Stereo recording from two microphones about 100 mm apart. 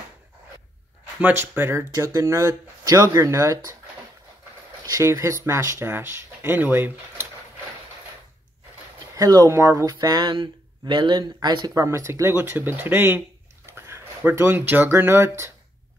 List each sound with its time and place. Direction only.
1.5 s speech: 25° right (ahead or behind)
1.9 s speech: 35° right (ahead or behind)
4.8 s speech: 35° right (ahead or behind)
9.1 s speech: 40° right (ahead or behind)
9.5 s speech: 25° right (ahead or behind)
9.8 s speech: 40° right (ahead or behind)
11.7 s speech: 30° right (ahead or behind)